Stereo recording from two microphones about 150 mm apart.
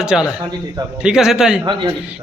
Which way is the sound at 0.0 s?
5° right (ahead or behind).